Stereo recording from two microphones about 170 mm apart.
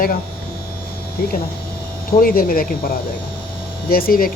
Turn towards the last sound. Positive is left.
turn(degrees=60)  # may be behind; listen again after turning